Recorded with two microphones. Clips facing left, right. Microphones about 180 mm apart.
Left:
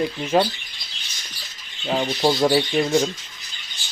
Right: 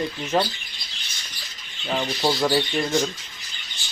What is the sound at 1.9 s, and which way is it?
Speech, 20° left (ahead or behind).